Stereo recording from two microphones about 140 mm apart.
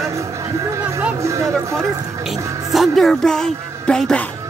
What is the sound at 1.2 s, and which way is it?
Speech, 20° right (ahead or behind).